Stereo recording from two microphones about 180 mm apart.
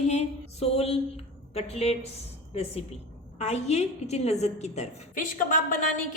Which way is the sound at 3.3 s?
40° left (ahead or behind).